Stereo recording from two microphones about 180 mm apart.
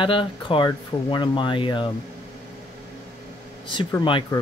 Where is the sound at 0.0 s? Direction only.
30° left (ahead or behind).